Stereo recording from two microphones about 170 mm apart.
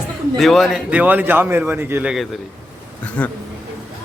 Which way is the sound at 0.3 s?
Centre (ahead or behind).